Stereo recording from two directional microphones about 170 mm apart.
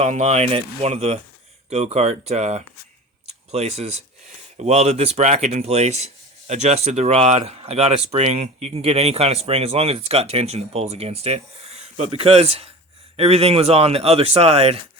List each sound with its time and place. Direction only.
0.0 s speech: 40° right (ahead or behind)